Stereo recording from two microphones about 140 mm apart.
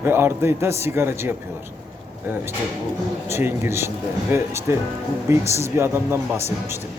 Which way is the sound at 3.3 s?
20° right (ahead or behind).